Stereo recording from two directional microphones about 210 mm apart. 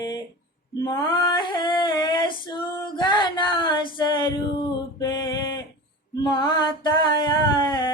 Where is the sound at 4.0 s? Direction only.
20° left (ahead or behind).